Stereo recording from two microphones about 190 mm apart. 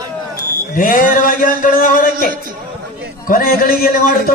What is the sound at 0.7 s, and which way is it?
A man's voice, 45° left (ahead or behind).